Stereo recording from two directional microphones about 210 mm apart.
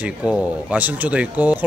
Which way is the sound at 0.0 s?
5° right (ahead or behind).